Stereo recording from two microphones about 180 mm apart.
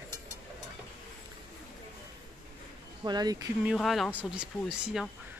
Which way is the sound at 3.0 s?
20° right (ahead or behind).